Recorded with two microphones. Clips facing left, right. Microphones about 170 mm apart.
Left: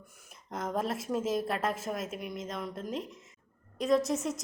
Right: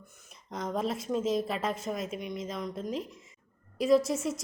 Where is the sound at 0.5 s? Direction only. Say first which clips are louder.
Right 1 dB; 5° left (ahead or behind).